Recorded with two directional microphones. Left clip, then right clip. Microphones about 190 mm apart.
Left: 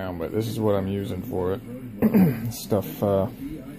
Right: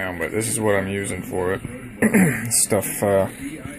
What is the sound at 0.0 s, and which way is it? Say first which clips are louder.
Speech: right 4 dB; 5° left (ahead or behind).